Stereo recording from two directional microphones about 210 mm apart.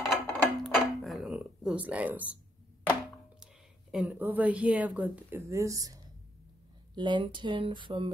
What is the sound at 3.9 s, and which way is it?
A woman's voice, 5° right (ahead or behind).